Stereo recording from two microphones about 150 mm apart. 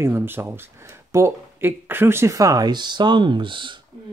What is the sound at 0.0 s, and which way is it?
Speech, 15° right (ahead or behind).